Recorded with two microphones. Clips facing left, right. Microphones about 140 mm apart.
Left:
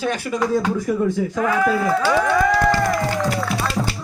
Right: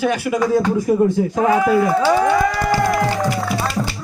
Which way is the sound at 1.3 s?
25° right (ahead or behind).